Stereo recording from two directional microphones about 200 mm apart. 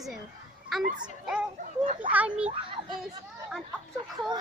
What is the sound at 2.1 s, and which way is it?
Speech, 5° right (ahead or behind).